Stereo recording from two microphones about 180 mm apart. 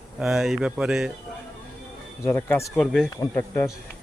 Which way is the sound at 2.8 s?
Centre (ahead or behind).